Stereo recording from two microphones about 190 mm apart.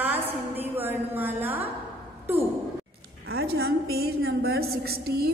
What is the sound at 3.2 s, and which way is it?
A woman's voice, 55° right (ahead or behind).